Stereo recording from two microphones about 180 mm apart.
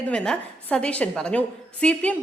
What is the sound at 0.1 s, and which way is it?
A woman's voice, 5° left (ahead or behind).